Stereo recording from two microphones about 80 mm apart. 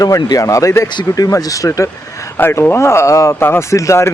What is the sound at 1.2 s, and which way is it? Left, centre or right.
Speech, left.